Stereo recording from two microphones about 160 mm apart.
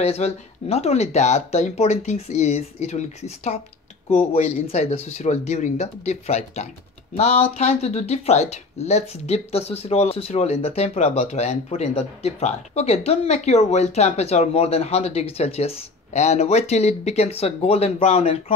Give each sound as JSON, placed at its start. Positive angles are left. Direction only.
{"t": 0.0, "sound": "speech", "side_deg": 40}